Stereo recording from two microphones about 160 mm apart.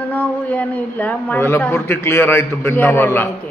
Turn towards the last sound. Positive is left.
turn(degrees=15)  # may be behind; listen again after turning